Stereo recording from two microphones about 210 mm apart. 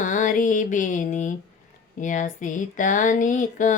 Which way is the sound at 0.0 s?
40° left (ahead or behind).